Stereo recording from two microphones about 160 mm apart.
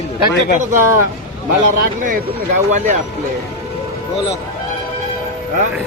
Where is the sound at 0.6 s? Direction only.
55° right (ahead or behind).